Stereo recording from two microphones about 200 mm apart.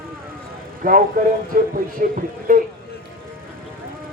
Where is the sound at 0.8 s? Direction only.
45° right (ahead or behind).